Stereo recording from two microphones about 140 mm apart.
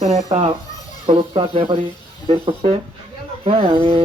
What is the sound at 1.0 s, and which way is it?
Speech, 40° right (ahead or behind).